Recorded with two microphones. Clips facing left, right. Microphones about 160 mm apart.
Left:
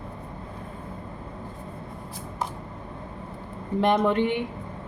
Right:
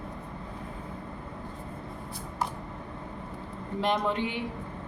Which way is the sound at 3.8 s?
60° left (ahead or behind).